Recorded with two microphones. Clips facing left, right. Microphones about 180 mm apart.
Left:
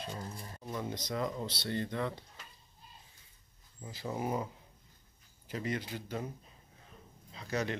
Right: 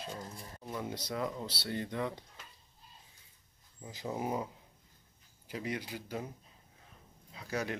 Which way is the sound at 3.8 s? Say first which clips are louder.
Even; 15° right (ahead or behind).